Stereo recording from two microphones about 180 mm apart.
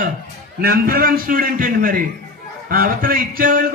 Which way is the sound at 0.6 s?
55° right (ahead or behind).